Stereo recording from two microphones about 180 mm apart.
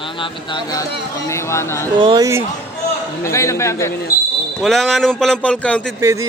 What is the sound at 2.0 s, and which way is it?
Speech, 25° right (ahead or behind).